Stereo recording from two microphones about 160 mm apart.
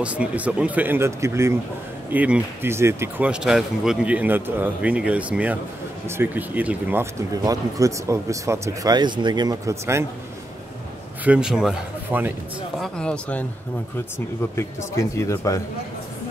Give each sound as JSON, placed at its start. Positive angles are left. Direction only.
{"t": 0.0, "sound": "speech", "side_deg": -10}
{"t": 11.2, "sound": "speech", "side_deg": -5}
{"t": 12.7, "sound": "speech", "side_deg": 5}
{"t": 14.1, "sound": "speech", "side_deg": 20}